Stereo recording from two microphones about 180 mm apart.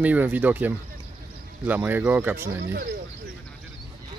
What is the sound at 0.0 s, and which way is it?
Speech, 10° right (ahead or behind).